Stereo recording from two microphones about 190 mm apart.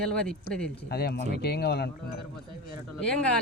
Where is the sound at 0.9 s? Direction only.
55° left (ahead or behind).